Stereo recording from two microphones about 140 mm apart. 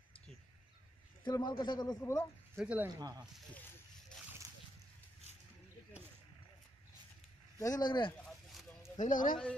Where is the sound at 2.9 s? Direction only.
30° right (ahead or behind).